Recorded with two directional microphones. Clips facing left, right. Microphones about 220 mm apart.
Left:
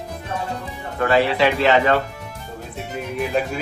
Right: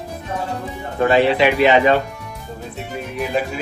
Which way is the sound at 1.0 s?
20° right (ahead or behind).